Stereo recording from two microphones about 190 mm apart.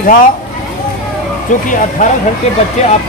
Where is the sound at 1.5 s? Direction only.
40° left (ahead or behind).